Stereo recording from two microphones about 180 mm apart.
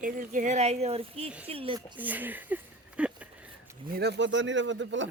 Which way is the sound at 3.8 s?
60° right (ahead or behind).